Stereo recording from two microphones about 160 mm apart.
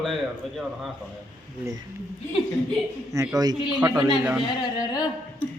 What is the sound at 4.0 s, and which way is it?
Speech, 25° right (ahead or behind).